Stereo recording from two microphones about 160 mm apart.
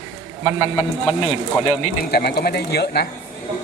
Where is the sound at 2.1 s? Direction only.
80° left.